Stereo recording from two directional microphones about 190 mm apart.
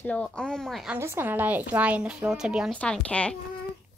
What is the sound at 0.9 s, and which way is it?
Speech, 10° right (ahead or behind).